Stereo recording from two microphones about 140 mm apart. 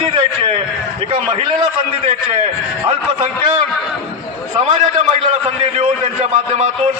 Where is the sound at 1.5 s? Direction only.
35° right (ahead or behind).